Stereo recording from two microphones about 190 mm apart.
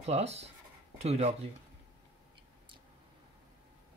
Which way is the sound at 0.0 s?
35° right (ahead or behind).